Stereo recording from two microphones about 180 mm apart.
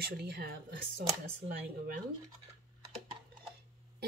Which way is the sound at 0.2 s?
60° right (ahead or behind).